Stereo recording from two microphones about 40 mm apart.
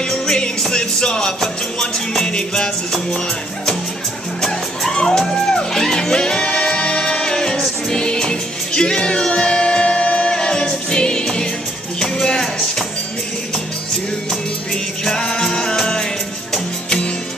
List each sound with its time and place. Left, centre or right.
0.1 s music: centre
4.4 s music: centre
9.3 s choir: left
12.4 s music: centre
15.0 s music: centre